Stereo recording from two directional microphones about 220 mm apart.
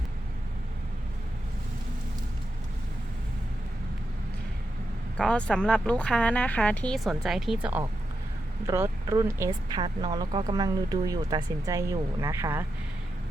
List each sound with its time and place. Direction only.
5.1 s speech: 5° left (ahead or behind); by 12.6 s 10° right (ahead or behind)